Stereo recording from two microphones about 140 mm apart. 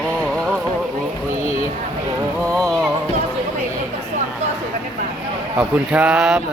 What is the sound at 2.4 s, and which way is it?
Music, 25° right (ahead or behind).